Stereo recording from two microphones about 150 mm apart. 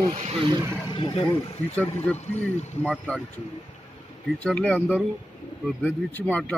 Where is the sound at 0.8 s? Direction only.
35° left (ahead or behind).